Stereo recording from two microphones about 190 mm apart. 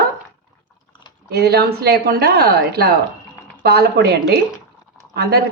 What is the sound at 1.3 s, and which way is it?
A woman's voice, 60° right (ahead or behind).